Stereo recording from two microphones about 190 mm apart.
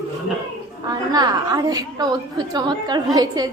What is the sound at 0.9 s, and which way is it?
A woman's voice, 20° right (ahead or behind).